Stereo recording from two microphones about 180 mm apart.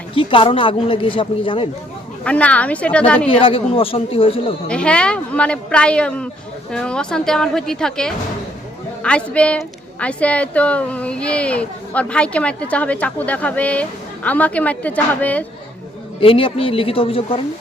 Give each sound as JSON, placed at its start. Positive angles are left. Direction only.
{"t": 0.1, "sound": "speech", "side_deg": 30}
{"t": 2.2, "sound": "a woman's voice", "side_deg": 5}
{"t": 3.2, "sound": "speech", "side_deg": 30}
{"t": 4.7, "sound": "a woman's voice", "side_deg": 5}
{"t": 16.2, "sound": "speech", "side_deg": 30}